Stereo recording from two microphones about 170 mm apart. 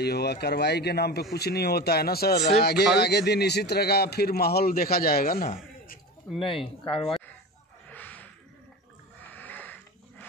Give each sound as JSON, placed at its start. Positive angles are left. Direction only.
{"t": 0.0, "sound": "a man's voice", "side_deg": 70}
{"t": 6.4, "sound": "speech", "side_deg": 30}
{"t": 7.9, "sound": "a sound", "side_deg": 10}
{"t": 9.3, "sound": "wheeze", "side_deg": 10}